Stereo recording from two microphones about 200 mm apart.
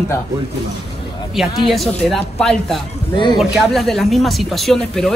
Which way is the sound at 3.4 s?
Centre (ahead or behind).